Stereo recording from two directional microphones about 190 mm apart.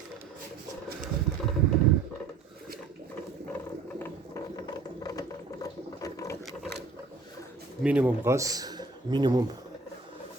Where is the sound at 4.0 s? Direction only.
20° left (ahead or behind).